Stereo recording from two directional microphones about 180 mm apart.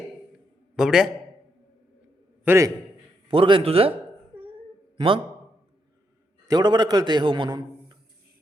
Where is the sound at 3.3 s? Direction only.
30° right (ahead or behind).